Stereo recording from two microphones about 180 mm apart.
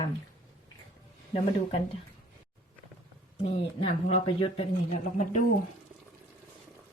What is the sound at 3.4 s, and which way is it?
Speech, 35° left (ahead or behind).